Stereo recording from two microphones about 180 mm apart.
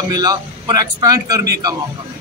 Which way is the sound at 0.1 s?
20° right (ahead or behind).